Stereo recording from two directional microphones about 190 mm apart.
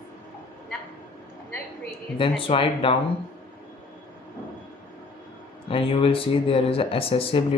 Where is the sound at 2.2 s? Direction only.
30° left (ahead or behind).